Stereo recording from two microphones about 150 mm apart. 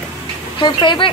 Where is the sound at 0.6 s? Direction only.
30° left (ahead or behind).